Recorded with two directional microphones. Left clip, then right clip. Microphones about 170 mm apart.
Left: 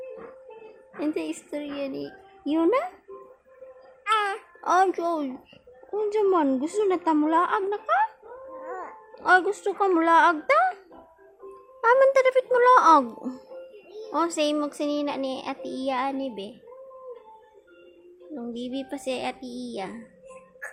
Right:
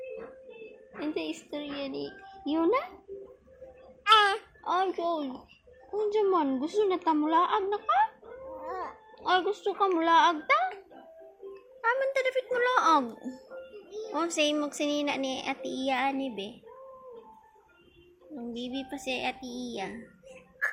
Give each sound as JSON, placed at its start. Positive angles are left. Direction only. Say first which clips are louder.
{"t": 0.9, "sound": "speech", "louder": "left 5 dB", "side_deg": 45}
{"t": 4.0, "sound": "music", "louder": "right 3 dB", "side_deg": 15}
{"t": 4.6, "sound": "a child's voice", "louder": "left 7 dB", "side_deg": 50}
{"t": 6.1, "sound": "speech", "louder": "left 4 dB", "side_deg": 40}
{"t": 8.6, "sound": "a sound", "louder": "even", "side_deg": 20}
{"t": 9.1, "sound": "speech", "louder": "left 7 dB", "side_deg": 45}
{"t": 11.8, "sound": "speech", "louder": "left 9 dB", "side_deg": 35}
{"t": 14.3, "sound": "music", "louder": "left 2 dB", "side_deg": 20}
{"t": 18.3, "sound": "a woman's voice", "louder": "left 4 dB", "side_deg": 25}